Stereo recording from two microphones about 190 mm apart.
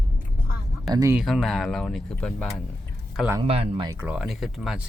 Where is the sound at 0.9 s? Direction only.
15° right (ahead or behind).